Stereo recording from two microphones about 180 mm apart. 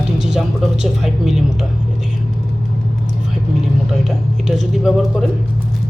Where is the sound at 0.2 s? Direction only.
Centre (ahead or behind).